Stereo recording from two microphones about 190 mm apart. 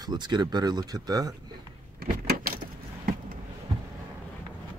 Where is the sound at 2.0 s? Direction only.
50° right (ahead or behind).